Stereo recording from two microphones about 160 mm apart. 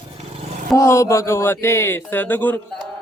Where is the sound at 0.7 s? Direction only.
20° left (ahead or behind).